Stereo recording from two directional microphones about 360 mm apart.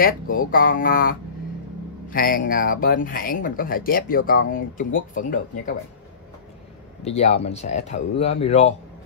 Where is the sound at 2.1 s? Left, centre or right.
Left.